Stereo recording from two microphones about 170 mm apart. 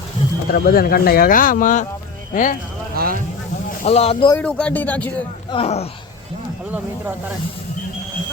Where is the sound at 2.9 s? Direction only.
60° right (ahead or behind).